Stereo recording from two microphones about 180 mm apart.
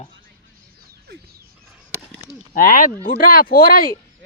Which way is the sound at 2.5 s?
50° left (ahead or behind).